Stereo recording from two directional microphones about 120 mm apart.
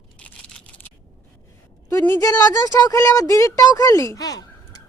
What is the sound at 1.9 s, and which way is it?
Speech, 20° left (ahead or behind).